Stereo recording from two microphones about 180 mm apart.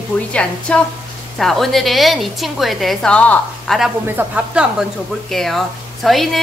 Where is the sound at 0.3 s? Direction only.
5° left (ahead or behind).